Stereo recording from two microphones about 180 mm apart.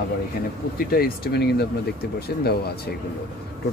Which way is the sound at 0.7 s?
55° left (ahead or behind).